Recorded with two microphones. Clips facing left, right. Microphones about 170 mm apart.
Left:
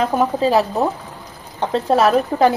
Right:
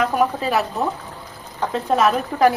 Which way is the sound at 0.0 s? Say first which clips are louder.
Left 3 dB; 30° left (ahead or behind).